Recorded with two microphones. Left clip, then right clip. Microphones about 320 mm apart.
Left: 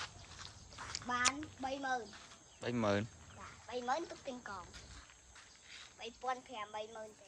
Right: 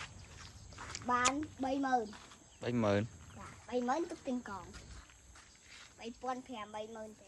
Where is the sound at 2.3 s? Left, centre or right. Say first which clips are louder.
Right 1 dB; centre.